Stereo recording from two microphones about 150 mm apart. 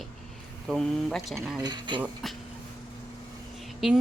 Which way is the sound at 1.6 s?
30° right (ahead or behind).